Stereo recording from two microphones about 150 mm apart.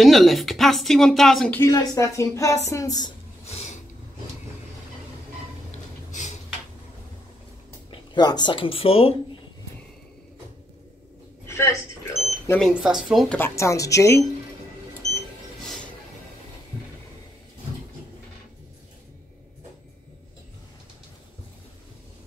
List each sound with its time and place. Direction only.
0.0 s speech: centre (ahead or behind)
1.6 s a woman's voice: 20° left (ahead or behind)
3.4 s a sound: 45° left (ahead or behind)
7.9 s speech: 30° left (ahead or behind)
11.4 s a sound: 20° left (ahead or behind)
12.5 s speech: centre (ahead or behind)
13.4 s a woman's voice: 20° left (ahead or behind)